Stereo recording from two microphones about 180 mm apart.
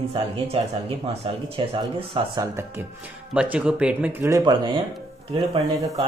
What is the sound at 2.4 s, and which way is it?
Speech, 15° right (ahead or behind).